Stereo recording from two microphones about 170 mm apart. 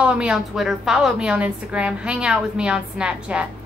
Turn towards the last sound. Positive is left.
turn(degrees=-5)  # may be behind; listen again after turning